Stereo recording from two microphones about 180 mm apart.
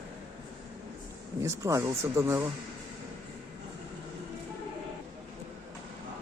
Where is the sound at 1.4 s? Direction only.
15° right (ahead or behind).